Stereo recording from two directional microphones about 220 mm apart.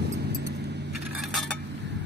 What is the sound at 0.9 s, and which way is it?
Coin, centre (ahead or behind).